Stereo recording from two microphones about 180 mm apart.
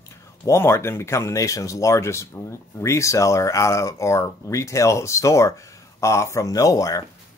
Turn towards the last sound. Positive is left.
turn(degrees=20)  # may be behind; listen again after turning